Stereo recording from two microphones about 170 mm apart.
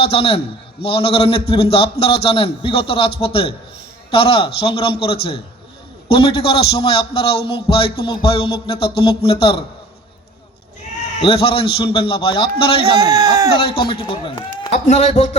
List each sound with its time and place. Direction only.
0.0 s a man's voice: 35° left (ahead or behind)
11.2 s a man's voice: 35° left (ahead or behind)
13.0 s speech: 20° right (ahead or behind)
13.6 s a man's voice: 30° left (ahead or behind)
14.7 s a man's voice: 40° left (ahead or behind)